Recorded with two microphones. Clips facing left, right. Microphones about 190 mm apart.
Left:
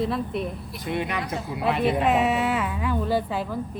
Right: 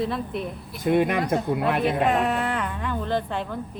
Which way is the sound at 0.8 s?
50° right (ahead or behind).